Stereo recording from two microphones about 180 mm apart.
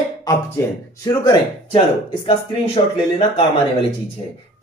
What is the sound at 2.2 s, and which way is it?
Speech, 30° left (ahead or behind).